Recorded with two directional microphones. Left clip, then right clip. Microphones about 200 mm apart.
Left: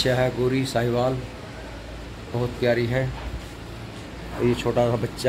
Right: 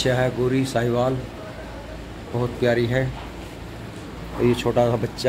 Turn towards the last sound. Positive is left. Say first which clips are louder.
# right 2 dB
turn(degrees=0)  # may be behind; listen again after turning